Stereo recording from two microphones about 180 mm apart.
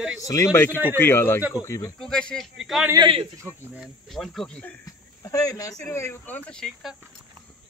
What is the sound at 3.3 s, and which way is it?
Speech, 10° right (ahead or behind).